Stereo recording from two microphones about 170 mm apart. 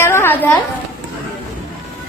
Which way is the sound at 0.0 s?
15° left (ahead or behind).